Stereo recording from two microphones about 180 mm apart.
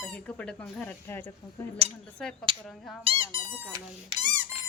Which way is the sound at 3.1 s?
35° right (ahead or behind).